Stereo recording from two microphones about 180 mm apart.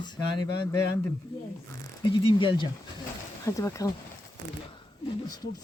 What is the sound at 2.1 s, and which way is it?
A woman's voice, 25° left (ahead or behind).